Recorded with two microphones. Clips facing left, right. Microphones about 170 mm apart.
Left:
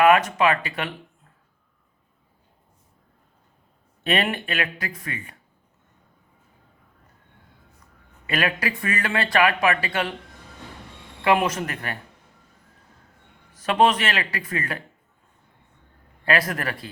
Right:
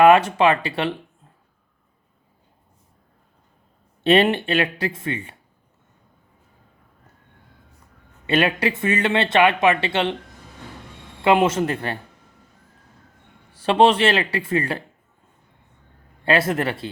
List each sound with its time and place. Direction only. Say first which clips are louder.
0.0 s speech: right 4 dB; 30° right (ahead or behind)
4.0 s speech: right 8 dB; 30° right (ahead or behind)
8.3 s speech: right 5 dB; 25° right (ahead or behind)
11.2 s speech: right 4 dB; 25° right (ahead or behind)
13.5 s speech: right 4 dB; 30° right (ahead or behind)
16.2 s speech: right 4 dB; 25° right (ahead or behind)